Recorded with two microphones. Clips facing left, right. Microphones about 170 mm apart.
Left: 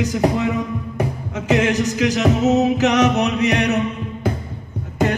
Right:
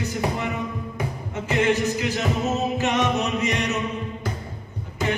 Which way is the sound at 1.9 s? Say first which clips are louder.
Left 7 dB; 90° left.